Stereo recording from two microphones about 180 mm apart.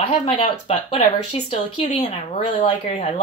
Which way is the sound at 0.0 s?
35° left (ahead or behind).